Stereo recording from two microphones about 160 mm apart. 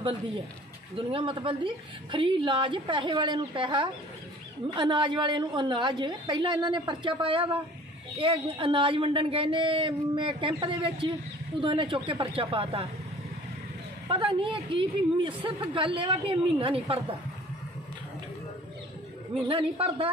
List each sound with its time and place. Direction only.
0.9 s a woman's voice: 30° right (ahead or behind)
14.0 s a woman's voice: 30° right (ahead or behind)
19.5 s a woman's voice: 35° right (ahead or behind)